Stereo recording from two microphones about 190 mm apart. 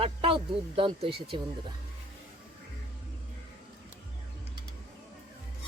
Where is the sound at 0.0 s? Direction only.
30° right (ahead or behind).